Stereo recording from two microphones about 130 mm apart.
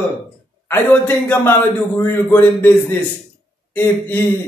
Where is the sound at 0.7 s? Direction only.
15° left (ahead or behind).